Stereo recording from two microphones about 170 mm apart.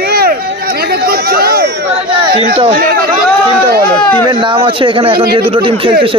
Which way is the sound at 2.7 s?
60° right (ahead or behind).